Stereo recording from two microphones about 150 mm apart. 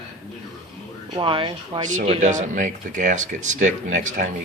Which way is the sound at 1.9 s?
50° right (ahead or behind).